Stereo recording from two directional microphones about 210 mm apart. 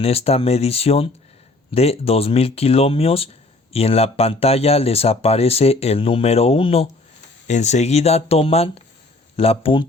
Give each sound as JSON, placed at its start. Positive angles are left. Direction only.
{"t": 0.0, "sound": "speech", "side_deg": 30}